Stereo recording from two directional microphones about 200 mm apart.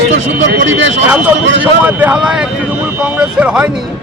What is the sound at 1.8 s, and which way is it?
A man's voice, 10° right (ahead or behind).